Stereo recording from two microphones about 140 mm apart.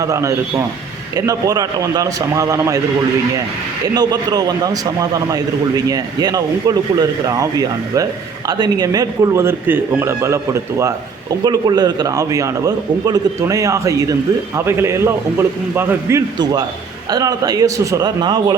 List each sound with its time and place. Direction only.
0.0 s a man's voice: 20° right (ahead or behind)
3.9 s a man's voice: 30° right (ahead or behind)